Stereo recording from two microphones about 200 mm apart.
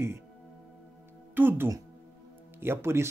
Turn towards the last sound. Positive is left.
turn(degrees=-15)  # may be behind; listen again after turning